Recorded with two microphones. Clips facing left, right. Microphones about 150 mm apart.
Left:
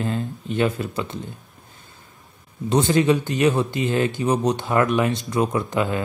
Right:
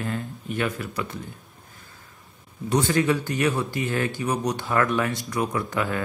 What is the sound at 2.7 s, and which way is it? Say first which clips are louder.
Speech: left 4 dB; 25° left (ahead or behind).